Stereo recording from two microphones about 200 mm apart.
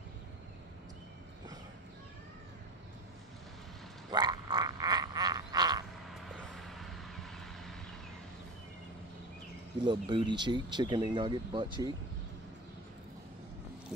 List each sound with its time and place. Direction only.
4.1 s frog: 20° right (ahead or behind)
6.0 s vehicle: centre (ahead or behind)
9.8 s speech: 20° right (ahead or behind)